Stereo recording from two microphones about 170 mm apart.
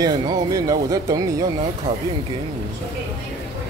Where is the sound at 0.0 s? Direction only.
20° right (ahead or behind).